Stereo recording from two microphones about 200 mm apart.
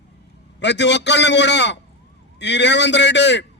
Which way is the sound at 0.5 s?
60° left (ahead or behind).